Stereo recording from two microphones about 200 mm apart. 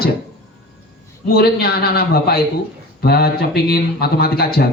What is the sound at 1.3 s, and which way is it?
Speech, 50° left (ahead or behind).